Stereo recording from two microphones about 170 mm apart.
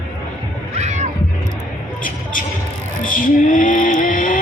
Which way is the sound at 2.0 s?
55° left (ahead or behind).